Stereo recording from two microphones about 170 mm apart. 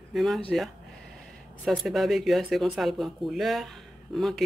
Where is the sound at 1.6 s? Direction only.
Centre (ahead or behind).